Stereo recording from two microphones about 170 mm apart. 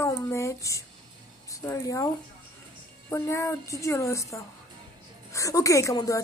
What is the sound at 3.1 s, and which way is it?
Speech, 15° left (ahead or behind).